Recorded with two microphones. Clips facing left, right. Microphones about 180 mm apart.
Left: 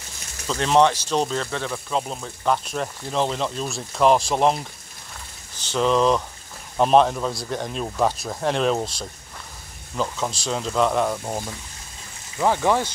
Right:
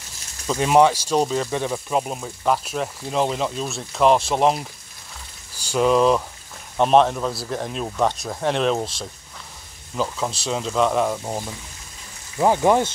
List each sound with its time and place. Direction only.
0.5 s speech: 10° right (ahead or behind)
5.7 s speech: 5° right (ahead or behind)
12.4 s speech: 15° right (ahead or behind)